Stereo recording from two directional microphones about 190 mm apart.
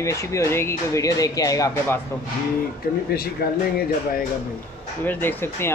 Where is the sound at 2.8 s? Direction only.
50° left (ahead or behind).